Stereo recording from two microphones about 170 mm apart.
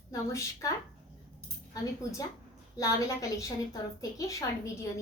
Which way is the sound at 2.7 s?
20° left (ahead or behind).